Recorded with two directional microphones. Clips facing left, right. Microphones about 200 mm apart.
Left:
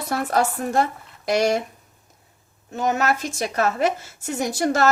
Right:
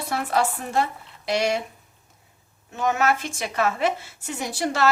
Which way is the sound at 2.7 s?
40° left (ahead or behind).